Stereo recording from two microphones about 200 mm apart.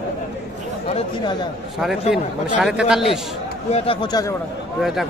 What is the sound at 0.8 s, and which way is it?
Speech, 25° left (ahead or behind).